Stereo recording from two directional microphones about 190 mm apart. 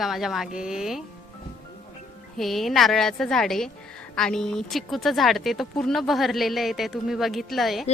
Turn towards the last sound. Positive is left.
turn(degrees=0)  # may be behind; listen again after turning